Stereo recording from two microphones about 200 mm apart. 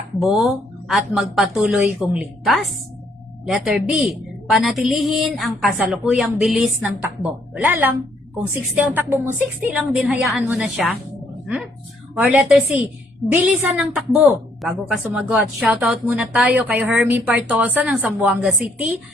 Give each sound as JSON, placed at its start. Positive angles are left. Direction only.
{"t": 0.2, "sound": "a woman's voice", "side_deg": 0}